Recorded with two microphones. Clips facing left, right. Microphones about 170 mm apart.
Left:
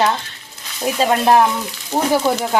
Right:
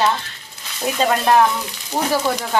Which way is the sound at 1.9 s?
25° left (ahead or behind).